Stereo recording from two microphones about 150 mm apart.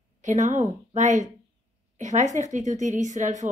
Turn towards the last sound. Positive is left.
turn(degrees=-55)  # may be behind; listen again after turning